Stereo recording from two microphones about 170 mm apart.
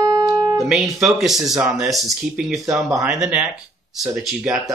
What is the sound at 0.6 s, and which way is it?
Speech, centre (ahead or behind).